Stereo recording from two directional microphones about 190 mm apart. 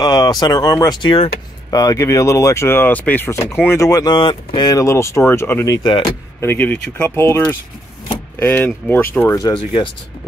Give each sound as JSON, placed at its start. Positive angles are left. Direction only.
{"t": 0.0, "sound": "speech", "side_deg": 20}
{"t": 6.4, "sound": "speech", "side_deg": 10}
{"t": 9.4, "sound": "speech", "side_deg": 25}